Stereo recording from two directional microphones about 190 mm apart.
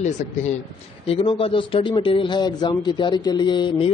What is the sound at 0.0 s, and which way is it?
Speech, 40° left (ahead or behind).